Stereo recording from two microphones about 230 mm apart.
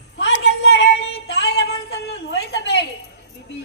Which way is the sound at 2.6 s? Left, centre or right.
Left.